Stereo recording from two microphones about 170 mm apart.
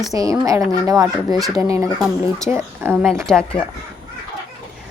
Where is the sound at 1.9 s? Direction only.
Centre (ahead or behind).